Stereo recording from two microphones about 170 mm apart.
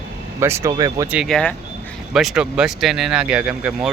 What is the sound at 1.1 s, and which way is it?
Speech, centre (ahead or behind).